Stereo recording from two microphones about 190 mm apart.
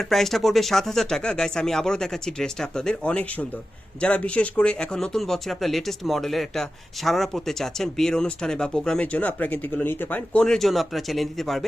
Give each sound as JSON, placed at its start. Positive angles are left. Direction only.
{"t": 0.0, "sound": "speech", "side_deg": 0}